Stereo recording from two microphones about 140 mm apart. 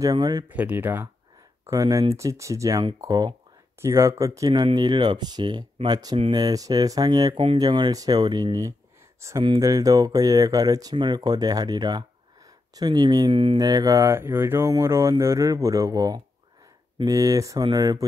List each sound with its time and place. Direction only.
0.0 s speech: 30° right (ahead or behind)
0.5 s speech: 10° right (ahead or behind)
1.7 s speech: 25° right (ahead or behind)
3.8 s speech: 20° right (ahead or behind)